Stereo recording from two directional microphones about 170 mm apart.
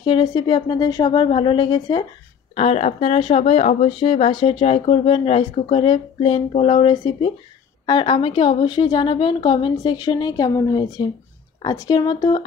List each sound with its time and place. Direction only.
0.0 s a woman's voice: 25° left (ahead or behind)
2.5 s a woman's voice: 35° left (ahead or behind)